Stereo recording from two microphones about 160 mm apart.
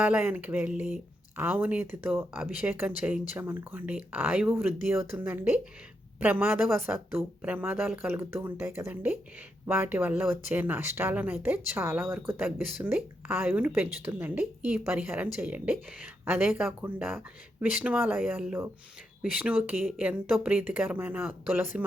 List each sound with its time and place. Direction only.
0.0 s speech: 10° right (ahead or behind)
16.5 s speech: 5° right (ahead or behind)